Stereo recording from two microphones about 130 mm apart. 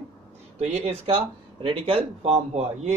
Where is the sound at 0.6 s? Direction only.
55° right (ahead or behind).